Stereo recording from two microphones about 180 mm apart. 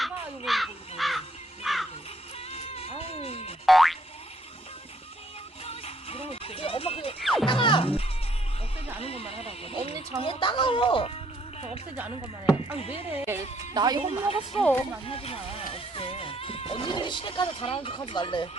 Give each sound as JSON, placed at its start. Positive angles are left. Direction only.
{"t": 0.0, "sound": "crow", "side_deg": 0}
{"t": 2.5, "sound": "music", "side_deg": 35}
{"t": 3.7, "sound": "boing", "side_deg": 0}
{"t": 5.6, "sound": "music", "side_deg": 30}
{"t": 7.2, "sound": "music", "side_deg": 0}
{"t": 7.4, "sound": "music", "side_deg": 30}
{"t": 9.0, "sound": "neigh", "side_deg": 35}
{"t": 10.2, "sound": "music", "side_deg": 30}
{"t": 12.7, "sound": "speech", "side_deg": 35}
{"t": 13.1, "sound": "speech", "side_deg": -10}
{"t": 13.7, "sound": "speech", "side_deg": -25}
{"t": 14.5, "sound": "speech", "side_deg": 5}
{"t": 15.0, "sound": "speech", "side_deg": 30}